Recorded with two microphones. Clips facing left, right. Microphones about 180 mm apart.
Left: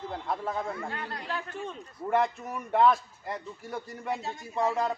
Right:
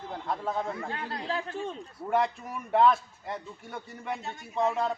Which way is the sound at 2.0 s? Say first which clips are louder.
Left 1 dB; centre (ahead or behind).